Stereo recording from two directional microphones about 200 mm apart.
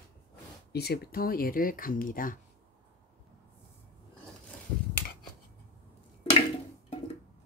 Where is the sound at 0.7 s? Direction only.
50° left (ahead or behind).